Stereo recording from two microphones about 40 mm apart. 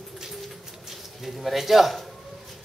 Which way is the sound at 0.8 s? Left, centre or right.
Centre.